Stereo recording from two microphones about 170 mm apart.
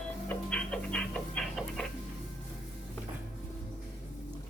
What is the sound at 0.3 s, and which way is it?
Music, 5° left (ahead or behind).